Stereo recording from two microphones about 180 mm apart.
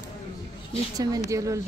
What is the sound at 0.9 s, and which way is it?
Speech, 20° right (ahead or behind).